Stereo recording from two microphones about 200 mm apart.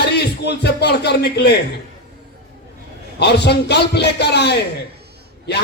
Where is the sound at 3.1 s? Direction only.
55° left (ahead or behind).